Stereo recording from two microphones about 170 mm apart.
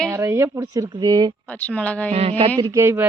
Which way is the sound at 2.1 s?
35° right (ahead or behind).